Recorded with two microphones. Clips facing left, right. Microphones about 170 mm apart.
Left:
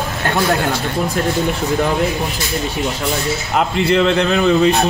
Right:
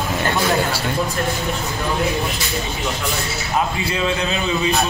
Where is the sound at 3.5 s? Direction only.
70° left (ahead or behind).